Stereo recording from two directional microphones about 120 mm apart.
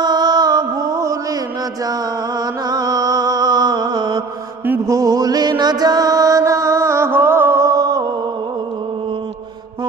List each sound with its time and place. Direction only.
0.0 s music: 35° right (ahead or behind)
2.7 s mantra: 35° right (ahead or behind)
4.8 s music: 30° right (ahead or behind)